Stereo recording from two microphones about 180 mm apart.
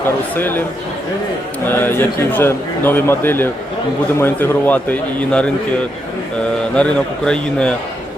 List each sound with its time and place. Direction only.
0.3 s a man's voice: 10° left (ahead or behind)
1.6 s a man's voice: 10° left (ahead or behind)
6.7 s a man's voice: 5° left (ahead or behind)